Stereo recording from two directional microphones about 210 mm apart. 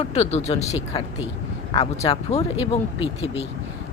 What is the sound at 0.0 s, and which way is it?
Speech, 30° left (ahead or behind).